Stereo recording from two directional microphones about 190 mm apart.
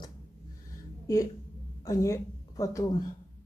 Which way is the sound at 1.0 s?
15° left (ahead or behind).